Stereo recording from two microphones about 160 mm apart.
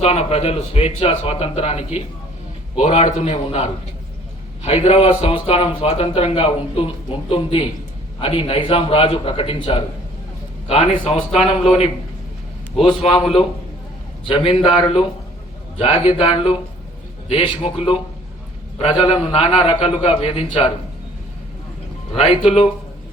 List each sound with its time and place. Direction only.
0.0 s speech: 40° left (ahead or behind)
2.8 s speech: 40° left (ahead or behind)
14.3 s a man's voice: 30° left (ahead or behind)
22.2 s speech: 35° left (ahead or behind)